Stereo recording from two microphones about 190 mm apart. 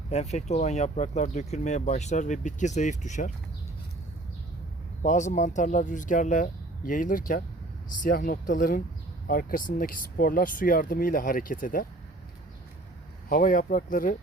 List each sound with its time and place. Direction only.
0.1 s speech: 35° left (ahead or behind)
5.0 s speech: 40° left (ahead or behind)
13.2 s speech: 45° left (ahead or behind)